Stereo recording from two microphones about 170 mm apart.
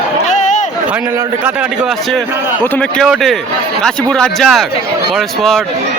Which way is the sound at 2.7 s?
5° left (ahead or behind).